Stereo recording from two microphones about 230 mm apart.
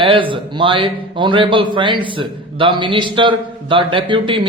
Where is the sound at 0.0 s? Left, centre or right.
Right.